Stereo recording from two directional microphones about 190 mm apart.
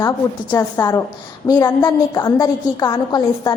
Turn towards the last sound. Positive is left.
turn(degrees=20)  # may be behind; listen again after turning